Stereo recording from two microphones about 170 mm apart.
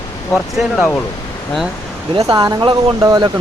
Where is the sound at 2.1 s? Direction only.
25° right (ahead or behind).